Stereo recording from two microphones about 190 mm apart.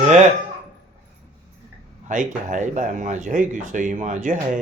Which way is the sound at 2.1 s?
40° right (ahead or behind).